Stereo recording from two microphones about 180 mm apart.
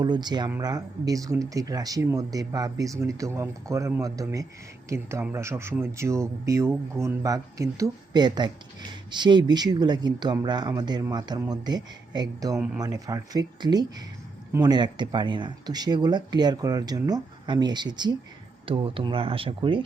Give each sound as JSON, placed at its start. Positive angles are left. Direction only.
{"t": 0.0, "sound": "speech", "side_deg": -25}